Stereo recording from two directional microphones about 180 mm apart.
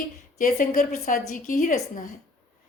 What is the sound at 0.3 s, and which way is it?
A woman's voice, 45° left (ahead or behind).